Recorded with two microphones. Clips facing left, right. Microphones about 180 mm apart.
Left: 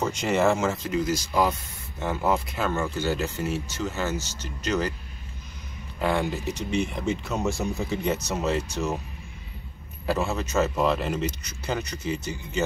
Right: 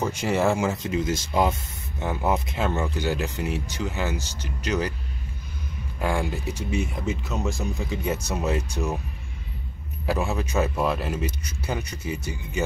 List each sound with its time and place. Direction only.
0.0 s speech: 10° right (ahead or behind)
0.8 s speech: 25° right (ahead or behind)
5.9 s speech: 10° right (ahead or behind)
10.0 s speech: 15° right (ahead or behind)